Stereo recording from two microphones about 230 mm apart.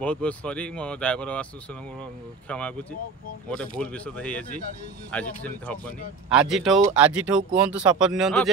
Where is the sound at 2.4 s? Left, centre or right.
Centre.